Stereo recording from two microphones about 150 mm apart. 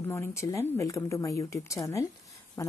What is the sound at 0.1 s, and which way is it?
Speech, 20° left (ahead or behind).